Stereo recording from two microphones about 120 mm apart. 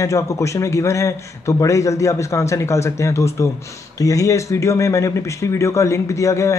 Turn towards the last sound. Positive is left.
turn(degrees=25)  # may be behind; listen again after turning